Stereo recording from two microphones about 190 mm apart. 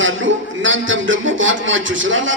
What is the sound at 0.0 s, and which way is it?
Speech, 85° right.